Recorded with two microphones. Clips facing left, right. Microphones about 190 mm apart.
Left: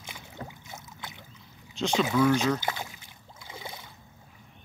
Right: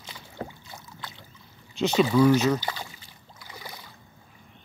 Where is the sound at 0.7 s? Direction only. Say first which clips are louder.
Even; 20° left (ahead or behind).